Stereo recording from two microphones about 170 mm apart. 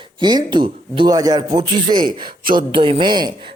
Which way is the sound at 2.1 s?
55° right (ahead or behind).